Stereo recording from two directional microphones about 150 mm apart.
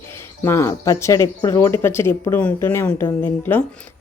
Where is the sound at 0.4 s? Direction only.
20° left (ahead or behind).